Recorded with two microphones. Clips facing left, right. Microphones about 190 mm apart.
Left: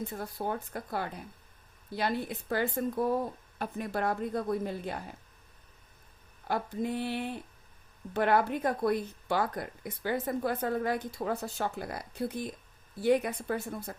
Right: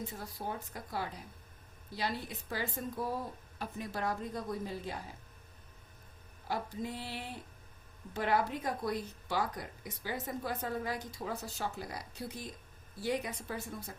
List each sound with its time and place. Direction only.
0.0 s a woman's voice: 55° left (ahead or behind)
6.5 s a woman's voice: 55° left (ahead or behind)